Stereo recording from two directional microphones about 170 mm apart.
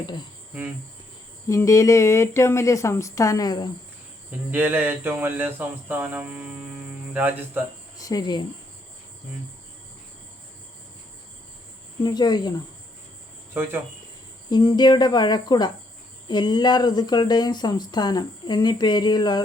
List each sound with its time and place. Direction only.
1.5 s speech: 20° left (ahead or behind)
4.3 s speech: 10° right (ahead or behind)
7.9 s speech: 20° left (ahead or behind)
12.0 s speech: 25° left (ahead or behind)
13.5 s speech: 15° right (ahead or behind)
14.5 s speech: 25° left (ahead or behind)